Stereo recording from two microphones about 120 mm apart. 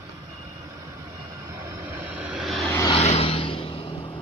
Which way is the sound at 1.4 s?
20° right (ahead or behind).